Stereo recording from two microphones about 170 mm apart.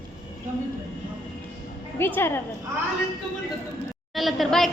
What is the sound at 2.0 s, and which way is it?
Speech, 10° left (ahead or behind).